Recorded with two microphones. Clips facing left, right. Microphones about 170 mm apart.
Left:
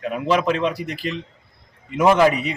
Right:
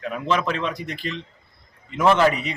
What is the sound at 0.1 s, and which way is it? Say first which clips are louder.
Speech: left 4 dB; 10° left (ahead or behind).